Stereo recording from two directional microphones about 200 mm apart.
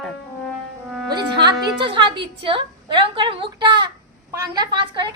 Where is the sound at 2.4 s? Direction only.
25° right (ahead or behind).